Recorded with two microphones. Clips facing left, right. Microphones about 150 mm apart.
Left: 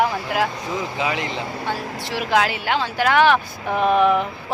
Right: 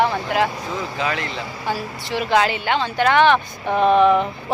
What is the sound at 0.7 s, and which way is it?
Speech, 15° left (ahead or behind).